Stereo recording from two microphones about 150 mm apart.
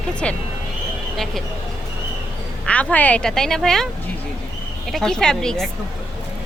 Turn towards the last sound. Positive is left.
turn(degrees=5)  # may be behind; listen again after turning